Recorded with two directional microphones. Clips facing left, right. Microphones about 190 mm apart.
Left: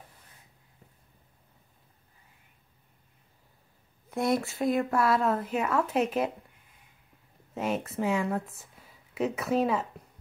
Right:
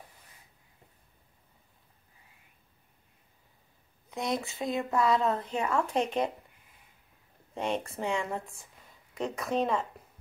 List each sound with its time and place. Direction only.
4.1 s speech: 20° right (ahead or behind)
4.6 s speech: 5° left (ahead or behind)
7.5 s speech: 5° left (ahead or behind)